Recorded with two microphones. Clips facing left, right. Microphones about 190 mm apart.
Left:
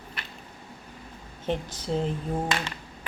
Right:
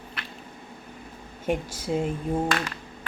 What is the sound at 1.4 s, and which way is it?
Speech, 10° right (ahead or behind).